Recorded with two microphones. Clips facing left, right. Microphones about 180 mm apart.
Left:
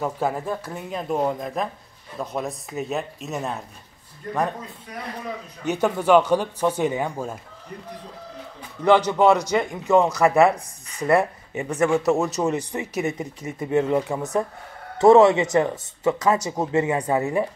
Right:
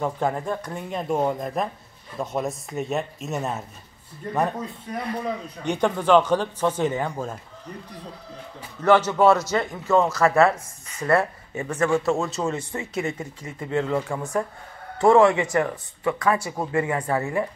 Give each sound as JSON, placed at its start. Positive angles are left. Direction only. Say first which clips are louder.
{"t": 0.0, "sound": "speech", "louder": "even", "side_deg": 5}
{"t": 5.7, "sound": "a man's voice", "louder": "left 1 dB", "side_deg": 5}
{"t": 8.8, "sound": "a man's voice", "louder": "left 1 dB", "side_deg": 15}